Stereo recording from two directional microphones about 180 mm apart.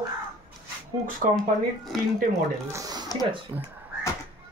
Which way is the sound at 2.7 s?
20° right (ahead or behind).